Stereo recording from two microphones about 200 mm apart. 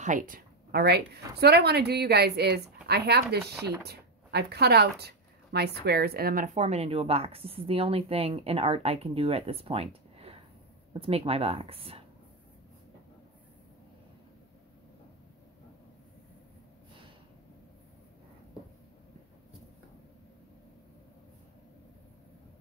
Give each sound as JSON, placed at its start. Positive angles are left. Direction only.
{"t": 0.0, "sound": "speech", "side_deg": -40}